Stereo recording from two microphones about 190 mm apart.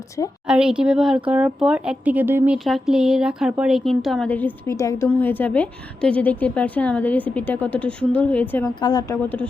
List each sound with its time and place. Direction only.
0.4 s a woman's voice: 5° right (ahead or behind)
8.8 s a woman's voice: 20° left (ahead or behind)